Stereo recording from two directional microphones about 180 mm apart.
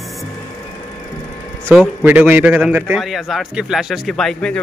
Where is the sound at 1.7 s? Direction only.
10° right (ahead or behind).